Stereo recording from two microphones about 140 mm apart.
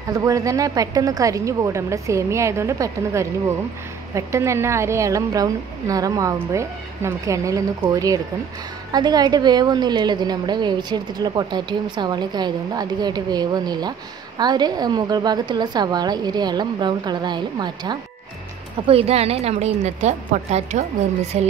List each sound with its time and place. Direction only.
0.1 s a woman's voice: 25° right (ahead or behind)
18.8 s a woman's voice: 45° right (ahead or behind)